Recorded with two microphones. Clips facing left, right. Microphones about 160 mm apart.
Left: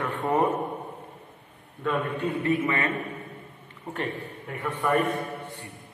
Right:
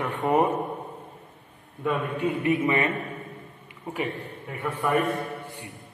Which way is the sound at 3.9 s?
5° right (ahead or behind).